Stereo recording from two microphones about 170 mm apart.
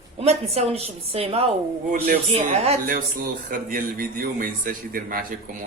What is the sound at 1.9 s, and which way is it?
Speech, 60° right (ahead or behind).